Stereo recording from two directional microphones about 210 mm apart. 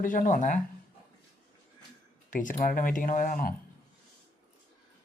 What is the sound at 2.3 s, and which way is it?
Speech, 40° left (ahead or behind).